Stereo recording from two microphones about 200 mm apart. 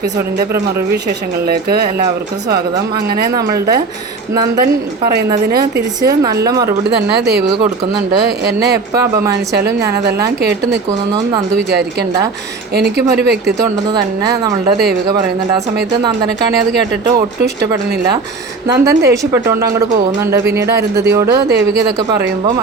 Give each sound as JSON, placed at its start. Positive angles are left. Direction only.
{"t": 1.5, "sound": "speech", "side_deg": -50}
{"t": 5.5, "sound": "speech", "side_deg": -50}
{"t": 6.0, "sound": "speech", "side_deg": -20}
{"t": 8.4, "sound": "speech", "side_deg": -55}
{"t": 9.0, "sound": "speech", "side_deg": -15}
{"t": 11.5, "sound": "a woman's voice", "side_deg": -55}
{"t": 13.6, "sound": "speech", "side_deg": -20}
{"t": 18.7, "sound": "speech", "side_deg": -15}
{"t": 20.6, "sound": "speech", "side_deg": -15}